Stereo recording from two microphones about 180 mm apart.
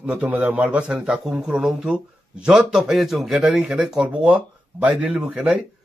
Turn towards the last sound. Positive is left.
turn(degrees=-5)  # may be behind; listen again after turning